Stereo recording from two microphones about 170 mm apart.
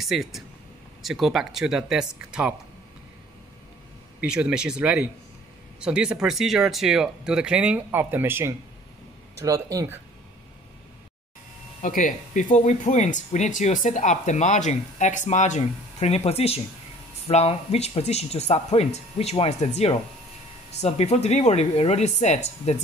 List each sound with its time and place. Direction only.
0.0 s speech: centre (ahead or behind)
4.2 s speech: 5° right (ahead or behind)
11.8 s speech: 50° left (ahead or behind)